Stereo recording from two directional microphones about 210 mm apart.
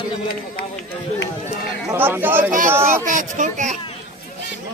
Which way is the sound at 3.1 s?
40° right (ahead or behind).